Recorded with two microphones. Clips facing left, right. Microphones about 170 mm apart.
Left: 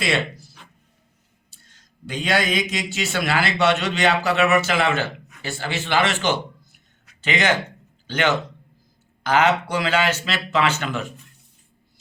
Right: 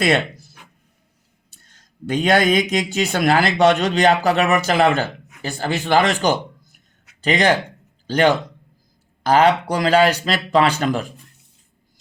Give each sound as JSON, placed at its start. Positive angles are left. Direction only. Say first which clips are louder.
{"t": 1.7, "sound": "a man's voice", "louder": "right 9 dB", "side_deg": -50}
{"t": 7.2, "sound": "a man's voice", "louder": "right 4 dB", "side_deg": -35}